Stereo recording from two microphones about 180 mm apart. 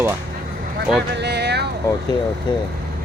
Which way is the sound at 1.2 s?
70° right (ahead or behind).